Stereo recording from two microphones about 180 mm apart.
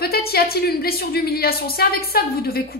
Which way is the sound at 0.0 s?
60° left (ahead or behind).